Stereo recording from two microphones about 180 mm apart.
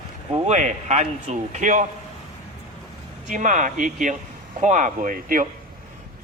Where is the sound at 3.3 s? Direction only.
45° right (ahead or behind).